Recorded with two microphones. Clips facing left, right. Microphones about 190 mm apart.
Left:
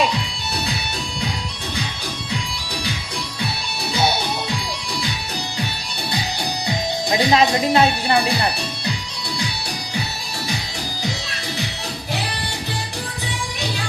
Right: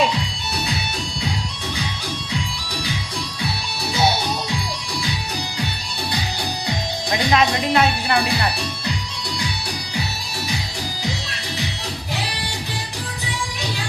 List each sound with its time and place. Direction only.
7.1 s speech: 30° left (ahead or behind)